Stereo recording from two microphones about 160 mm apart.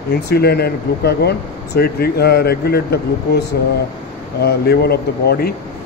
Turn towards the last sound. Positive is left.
turn(degrees=80)